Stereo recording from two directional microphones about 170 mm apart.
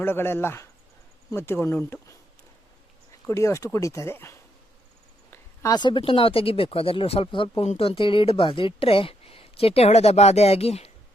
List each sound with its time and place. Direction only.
0.0 s speech: 15° left (ahead or behind)
3.2 s speech: 15° left (ahead or behind); by 10.9 s 35° left (ahead or behind)